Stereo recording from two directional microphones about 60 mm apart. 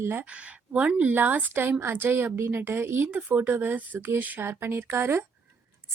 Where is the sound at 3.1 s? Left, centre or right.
Right.